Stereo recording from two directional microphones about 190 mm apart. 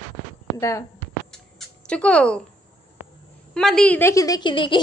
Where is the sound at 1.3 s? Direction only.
5° left (ahead or behind).